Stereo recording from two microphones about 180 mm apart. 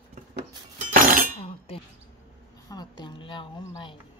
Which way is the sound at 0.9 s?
50° right (ahead or behind).